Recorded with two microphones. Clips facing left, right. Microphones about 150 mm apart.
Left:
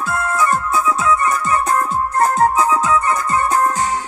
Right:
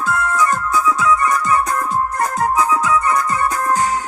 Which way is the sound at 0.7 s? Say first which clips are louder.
Even; 25° left (ahead or behind).